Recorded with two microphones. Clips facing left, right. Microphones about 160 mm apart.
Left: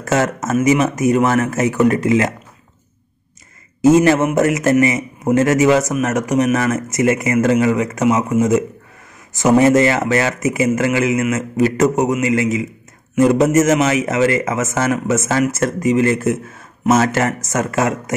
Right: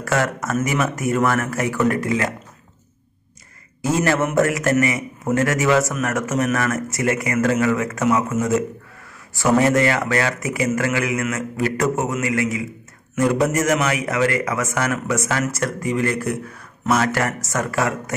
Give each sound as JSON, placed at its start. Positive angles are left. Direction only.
{"t": 0.0, "sound": "a man's voice", "side_deg": 20}
{"t": 3.8, "sound": "a man's voice", "side_deg": 20}